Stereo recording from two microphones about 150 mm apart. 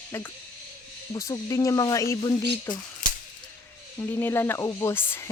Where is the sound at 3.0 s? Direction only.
60° left (ahead or behind).